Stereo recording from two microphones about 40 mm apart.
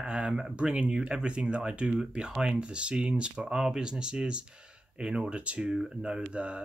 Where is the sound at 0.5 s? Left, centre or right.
Right.